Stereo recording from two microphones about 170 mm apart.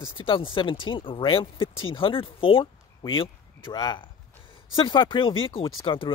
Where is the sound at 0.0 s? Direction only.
30° left (ahead or behind).